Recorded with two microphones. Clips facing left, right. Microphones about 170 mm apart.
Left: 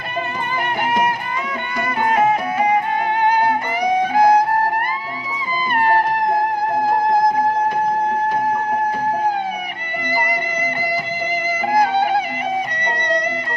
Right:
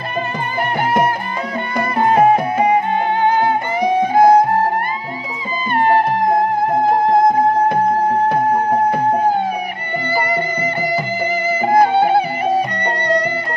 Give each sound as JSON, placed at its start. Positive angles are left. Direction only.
{"t": 1.8, "sound": "music", "side_deg": -35}
{"t": 5.8, "sound": "music", "side_deg": -25}
{"t": 10.1, "sound": "music", "side_deg": -30}
{"t": 11.6, "sound": "music", "side_deg": -30}